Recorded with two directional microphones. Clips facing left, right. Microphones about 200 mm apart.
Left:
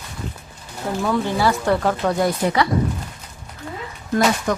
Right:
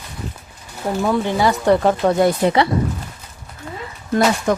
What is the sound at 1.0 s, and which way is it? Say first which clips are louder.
Speech: right 2 dB; 20° right (ahead or behind).